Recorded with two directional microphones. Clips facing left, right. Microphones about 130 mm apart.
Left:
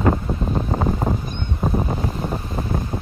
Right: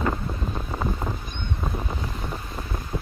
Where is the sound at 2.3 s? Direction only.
45° left (ahead or behind).